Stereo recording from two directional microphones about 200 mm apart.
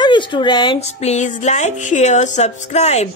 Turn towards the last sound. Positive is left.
turn(degrees=35)  # may be behind; listen again after turning